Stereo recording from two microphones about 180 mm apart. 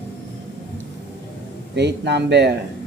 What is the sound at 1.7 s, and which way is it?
Speech, 70° right (ahead or behind).